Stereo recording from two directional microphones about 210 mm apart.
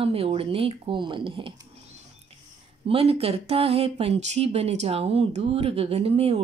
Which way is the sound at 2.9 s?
30° right (ahead or behind).